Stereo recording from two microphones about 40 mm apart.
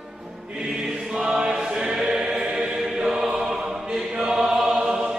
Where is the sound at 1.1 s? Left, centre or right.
Centre.